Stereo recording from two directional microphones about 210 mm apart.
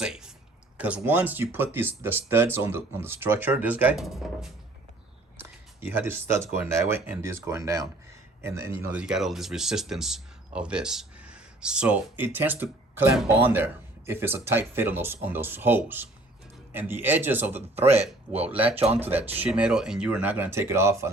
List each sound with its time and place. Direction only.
0.0 s a sound: 5° right (ahead or behind)
0.8 s speech: 5° right (ahead or behind)
17.9 s speech: 30° right (ahead or behind)
18.9 s speech: 10° right (ahead or behind)